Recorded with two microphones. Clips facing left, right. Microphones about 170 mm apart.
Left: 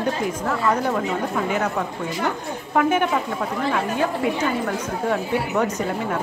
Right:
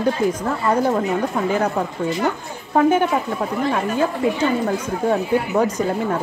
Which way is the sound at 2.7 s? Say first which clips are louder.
Right 4 dB; 30° right (ahead or behind).